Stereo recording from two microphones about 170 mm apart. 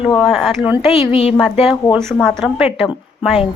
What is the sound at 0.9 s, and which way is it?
Speech, 35° left (ahead or behind).